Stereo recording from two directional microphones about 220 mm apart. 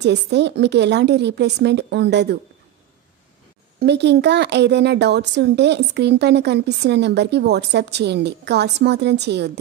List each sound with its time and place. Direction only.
0.0 s speech: 50° right (ahead or behind)
3.8 s speech: 50° right (ahead or behind)